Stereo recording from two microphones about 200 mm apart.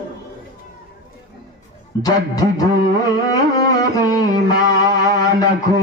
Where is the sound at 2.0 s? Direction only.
15° left (ahead or behind).